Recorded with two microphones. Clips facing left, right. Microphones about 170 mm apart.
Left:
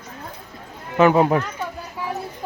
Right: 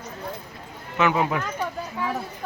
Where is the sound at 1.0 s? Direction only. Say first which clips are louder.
Left 7 dB; 40° left (ahead or behind).